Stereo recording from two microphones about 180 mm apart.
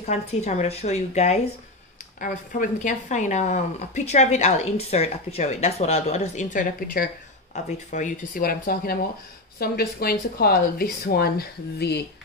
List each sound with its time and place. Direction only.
0.0 s speech: 40° left (ahead or behind)
2.1 s speech: 50° left (ahead or behind)